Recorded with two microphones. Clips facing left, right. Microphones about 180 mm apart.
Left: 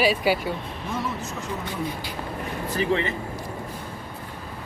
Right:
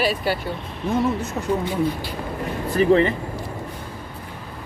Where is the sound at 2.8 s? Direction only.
40° right (ahead or behind).